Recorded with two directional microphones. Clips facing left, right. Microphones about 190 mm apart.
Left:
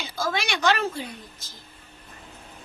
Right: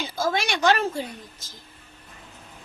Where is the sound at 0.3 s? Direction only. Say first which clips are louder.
Right 2 dB; 45° right (ahead or behind).